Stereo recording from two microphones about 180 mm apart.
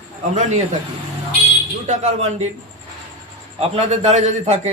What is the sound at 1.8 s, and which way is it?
Speech, 40° right (ahead or behind).